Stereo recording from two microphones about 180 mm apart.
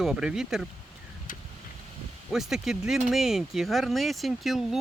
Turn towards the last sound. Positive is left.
turn(degrees=0)  # may be behind; listen again after turning